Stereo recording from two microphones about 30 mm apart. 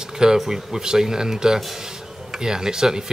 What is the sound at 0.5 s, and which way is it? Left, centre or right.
Speech, centre.